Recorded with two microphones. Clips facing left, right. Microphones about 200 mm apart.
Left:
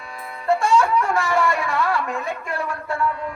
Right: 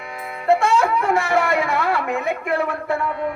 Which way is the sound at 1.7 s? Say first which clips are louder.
Right 1 dB; 60° right (ahead or behind).